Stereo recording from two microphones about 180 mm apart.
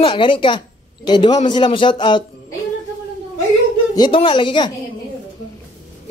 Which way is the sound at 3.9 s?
25° left (ahead or behind).